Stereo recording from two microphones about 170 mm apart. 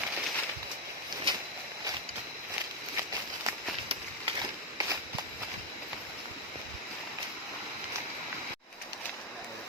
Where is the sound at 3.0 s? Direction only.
15° right (ahead or behind).